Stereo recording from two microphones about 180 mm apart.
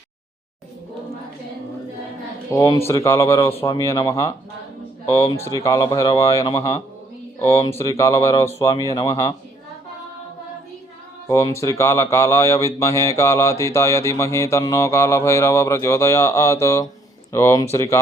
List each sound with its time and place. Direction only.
2.5 s speech: 15° left (ahead or behind)
11.3 s speech: 15° left (ahead or behind)